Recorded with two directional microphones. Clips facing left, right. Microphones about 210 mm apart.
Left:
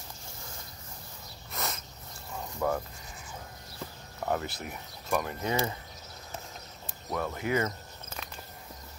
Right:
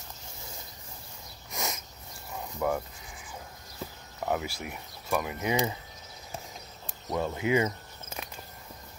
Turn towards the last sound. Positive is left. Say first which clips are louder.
# right 3 dB
turn(degrees=-15)  # may be behind; listen again after turning